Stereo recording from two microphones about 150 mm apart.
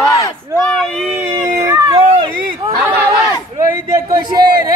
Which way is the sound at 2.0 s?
40° right (ahead or behind).